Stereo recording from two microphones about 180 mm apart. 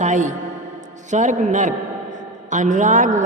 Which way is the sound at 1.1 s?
45° right (ahead or behind).